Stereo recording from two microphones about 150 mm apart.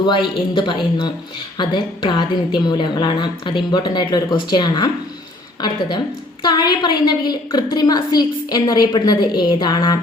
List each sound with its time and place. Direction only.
0.5 s a woman's voice: 30° left (ahead or behind)